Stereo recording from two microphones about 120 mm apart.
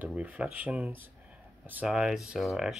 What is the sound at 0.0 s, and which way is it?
Speech, 10° right (ahead or behind).